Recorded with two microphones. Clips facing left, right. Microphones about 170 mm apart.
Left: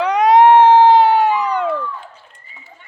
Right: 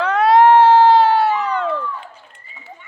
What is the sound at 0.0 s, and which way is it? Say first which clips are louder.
Cat: left 1 dB; 15° left (ahead or behind).